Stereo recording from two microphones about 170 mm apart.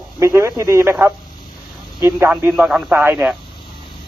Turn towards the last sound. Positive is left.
turn(degrees=-10)  # may be behind; listen again after turning